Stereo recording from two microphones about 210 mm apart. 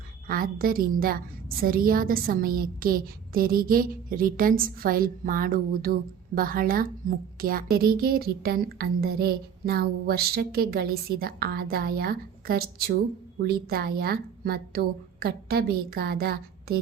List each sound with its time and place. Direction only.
0.3 s a woman's voice: 45° right (ahead or behind)